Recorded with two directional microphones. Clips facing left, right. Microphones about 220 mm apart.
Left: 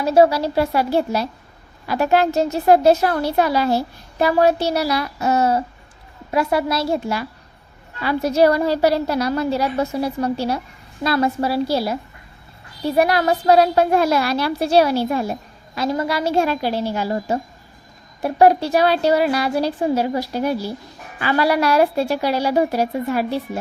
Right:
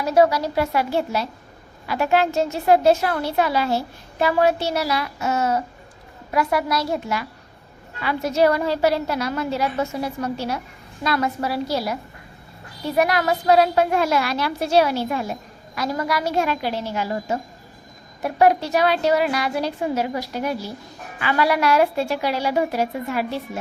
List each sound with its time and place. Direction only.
0.0 s a woman's voice: 30° left (ahead or behind)
13.0 s a woman's voice: 30° left (ahead or behind)